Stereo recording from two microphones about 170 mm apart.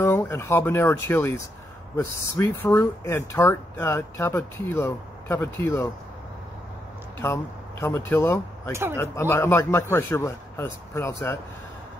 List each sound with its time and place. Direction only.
0.0 s speech: 15° left (ahead or behind)
7.2 s speech: 15° left (ahead or behind)